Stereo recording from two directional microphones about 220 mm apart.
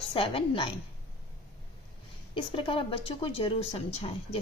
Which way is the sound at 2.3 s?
25° left (ahead or behind).